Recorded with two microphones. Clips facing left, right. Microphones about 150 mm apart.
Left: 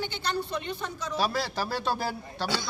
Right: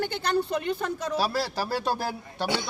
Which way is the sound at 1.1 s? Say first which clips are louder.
Left 1 dB; 5° right (ahead or behind).